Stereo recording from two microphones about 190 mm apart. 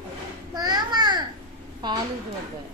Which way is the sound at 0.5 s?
20° right (ahead or behind).